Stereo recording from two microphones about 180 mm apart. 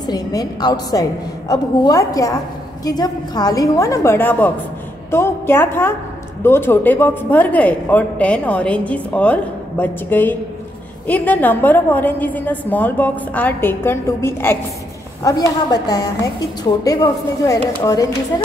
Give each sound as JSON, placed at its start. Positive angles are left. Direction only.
{"t": 0.0, "sound": "a woman's voice", "side_deg": 20}